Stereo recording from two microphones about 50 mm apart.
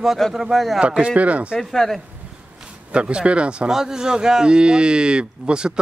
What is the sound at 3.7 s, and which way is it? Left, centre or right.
A man's voice, centre.